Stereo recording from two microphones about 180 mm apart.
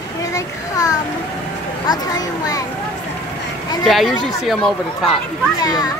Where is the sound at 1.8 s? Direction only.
20° left (ahead or behind).